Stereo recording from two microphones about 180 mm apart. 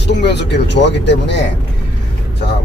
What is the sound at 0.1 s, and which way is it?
Speech, 70° left (ahead or behind).